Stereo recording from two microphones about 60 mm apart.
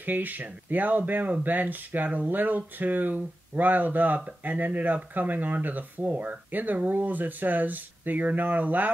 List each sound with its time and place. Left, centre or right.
0.0 s speech: right